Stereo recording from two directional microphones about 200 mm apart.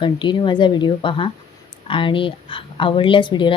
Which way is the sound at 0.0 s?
25° left (ahead or behind).